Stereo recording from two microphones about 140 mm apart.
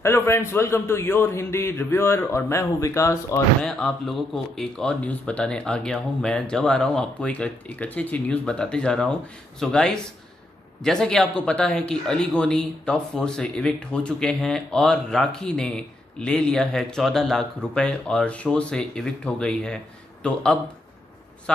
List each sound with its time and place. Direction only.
0.0 s a man's voice: 20° left (ahead or behind)
3.6 s speech: 5° left (ahead or behind)